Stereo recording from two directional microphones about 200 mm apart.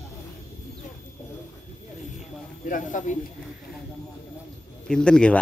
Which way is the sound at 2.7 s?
40° left (ahead or behind).